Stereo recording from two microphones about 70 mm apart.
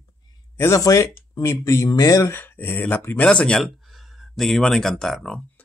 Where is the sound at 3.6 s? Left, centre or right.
Centre.